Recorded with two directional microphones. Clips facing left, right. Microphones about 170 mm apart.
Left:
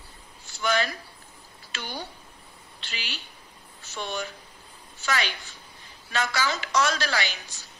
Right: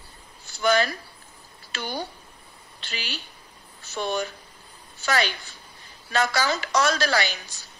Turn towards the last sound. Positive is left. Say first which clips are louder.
# right 5 dB
turn(degrees=-40)  # may be behind; listen again after turning